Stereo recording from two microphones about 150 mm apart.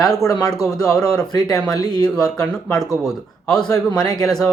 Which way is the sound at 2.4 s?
5° left (ahead or behind).